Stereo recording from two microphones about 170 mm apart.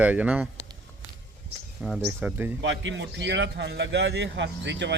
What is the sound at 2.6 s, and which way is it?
A man's voice, 90° right.